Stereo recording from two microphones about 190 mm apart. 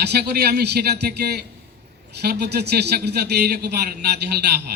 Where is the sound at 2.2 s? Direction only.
60° right (ahead or behind).